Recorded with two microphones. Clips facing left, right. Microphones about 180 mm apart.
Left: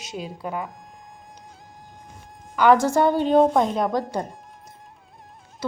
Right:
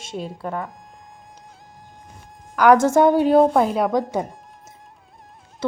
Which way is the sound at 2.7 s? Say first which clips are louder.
Right 4 dB; 20° right (ahead or behind).